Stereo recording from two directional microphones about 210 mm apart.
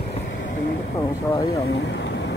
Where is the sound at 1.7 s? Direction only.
55° left (ahead or behind).